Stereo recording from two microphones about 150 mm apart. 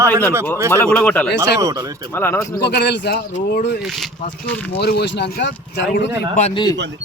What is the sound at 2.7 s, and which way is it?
A man's voice, 90° left.